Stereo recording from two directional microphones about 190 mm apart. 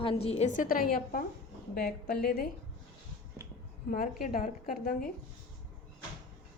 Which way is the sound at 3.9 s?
50° left (ahead or behind).